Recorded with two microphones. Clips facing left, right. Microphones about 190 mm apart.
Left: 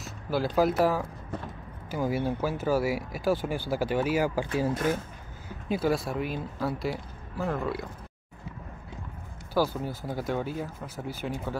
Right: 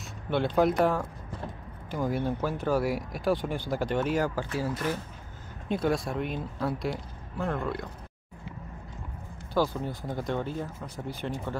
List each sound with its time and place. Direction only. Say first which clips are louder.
0.0 s speech: even; centre (ahead or behind)
4.7 s speech: left 3 dB; 50° left (ahead or behind)
5.7 s speech: left 1 dB; 5° left (ahead or behind)
9.5 s speech: even; 5° left (ahead or behind)